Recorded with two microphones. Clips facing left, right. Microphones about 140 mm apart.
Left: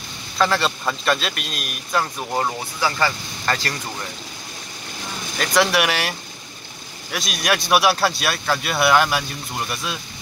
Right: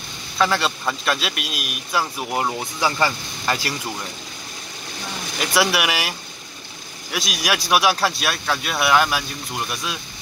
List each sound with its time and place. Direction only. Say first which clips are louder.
0.4 s a man's voice: left 1 dB; centre (ahead or behind)
5.4 s a man's voice: left 2 dB; 5° right (ahead or behind)